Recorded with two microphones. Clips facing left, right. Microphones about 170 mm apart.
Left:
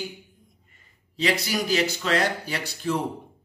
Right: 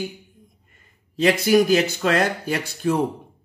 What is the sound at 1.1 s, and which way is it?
Speech, 50° right (ahead or behind).